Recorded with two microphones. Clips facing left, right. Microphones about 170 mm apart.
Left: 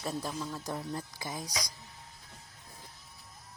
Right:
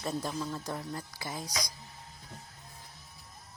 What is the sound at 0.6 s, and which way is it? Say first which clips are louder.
Speech: left 1 dB; 15° left (ahead or behind).